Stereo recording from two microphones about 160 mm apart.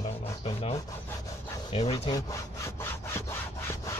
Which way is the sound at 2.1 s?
20° left (ahead or behind).